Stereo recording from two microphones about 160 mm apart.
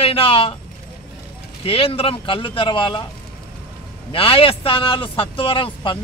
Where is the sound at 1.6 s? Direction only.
35° left (ahead or behind).